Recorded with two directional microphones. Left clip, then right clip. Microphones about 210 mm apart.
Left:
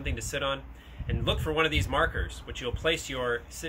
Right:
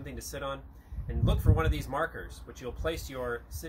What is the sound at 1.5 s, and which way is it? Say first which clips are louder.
Speech: left 6 dB; 5° left (ahead or behind).